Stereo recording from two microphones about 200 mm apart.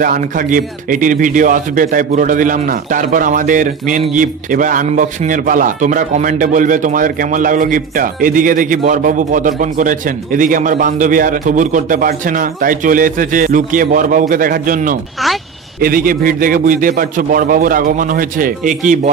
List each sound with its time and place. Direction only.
0.0 s a man's voice: 45° right (ahead or behind)